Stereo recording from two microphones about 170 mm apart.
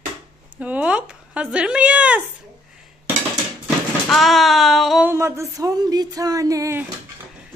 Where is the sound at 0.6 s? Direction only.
10° right (ahead or behind).